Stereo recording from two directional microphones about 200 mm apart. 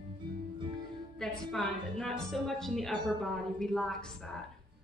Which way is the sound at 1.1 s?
5° left (ahead or behind).